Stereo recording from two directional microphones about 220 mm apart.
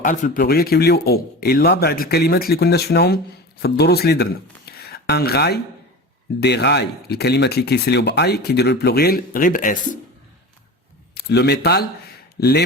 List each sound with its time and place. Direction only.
0.0 s speech: 35° left (ahead or behind)
11.1 s speech: 50° left (ahead or behind)